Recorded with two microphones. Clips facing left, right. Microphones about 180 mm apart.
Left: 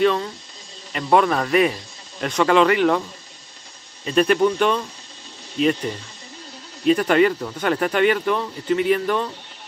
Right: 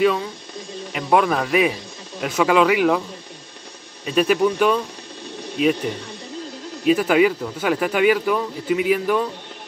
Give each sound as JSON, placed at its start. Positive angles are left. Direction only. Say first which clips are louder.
{"t": 0.0, "sound": "speech", "louder": "even", "side_deg": -5}
{"t": 4.0, "sound": "speech", "louder": "left 1 dB", "side_deg": -5}